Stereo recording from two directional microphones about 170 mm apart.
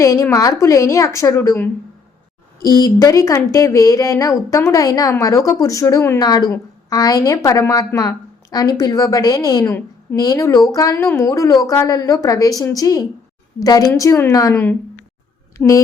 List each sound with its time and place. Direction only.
0.0 s a woman's voice: 20° left (ahead or behind)
2.6 s a woman's voice: 60° left (ahead or behind)
2.8 s a woman's voice: 20° left (ahead or behind)